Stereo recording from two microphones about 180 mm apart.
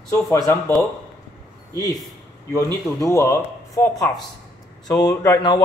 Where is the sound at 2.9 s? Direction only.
15° left (ahead or behind).